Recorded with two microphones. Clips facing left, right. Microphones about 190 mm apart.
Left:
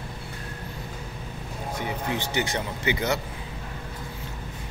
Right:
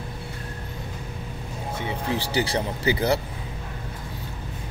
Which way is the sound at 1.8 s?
35° right (ahead or behind).